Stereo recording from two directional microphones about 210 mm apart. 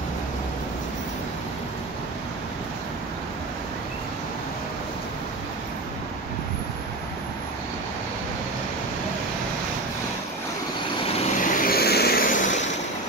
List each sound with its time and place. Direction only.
11.1 s vehicle: 35° left (ahead or behind)